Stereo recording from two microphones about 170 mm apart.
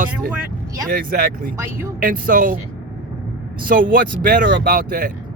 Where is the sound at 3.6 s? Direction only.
55° right (ahead or behind).